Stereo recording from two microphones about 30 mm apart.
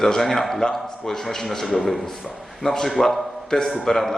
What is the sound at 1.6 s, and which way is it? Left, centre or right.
A man's voice, centre.